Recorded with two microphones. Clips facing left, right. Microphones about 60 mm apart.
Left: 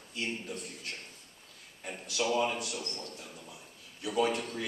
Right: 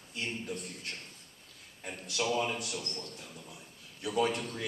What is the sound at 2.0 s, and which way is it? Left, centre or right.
A man's voice, centre.